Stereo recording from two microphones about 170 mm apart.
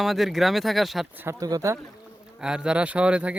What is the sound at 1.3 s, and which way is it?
Speech, 20° right (ahead or behind).